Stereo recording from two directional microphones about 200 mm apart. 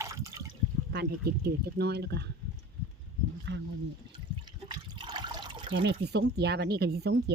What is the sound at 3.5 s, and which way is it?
Speech, 60° right (ahead or behind).